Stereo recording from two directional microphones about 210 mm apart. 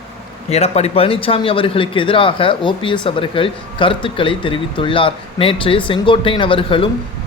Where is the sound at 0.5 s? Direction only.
30° left (ahead or behind).